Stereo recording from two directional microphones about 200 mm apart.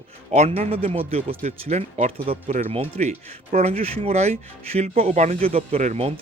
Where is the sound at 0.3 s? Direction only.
30° right (ahead or behind).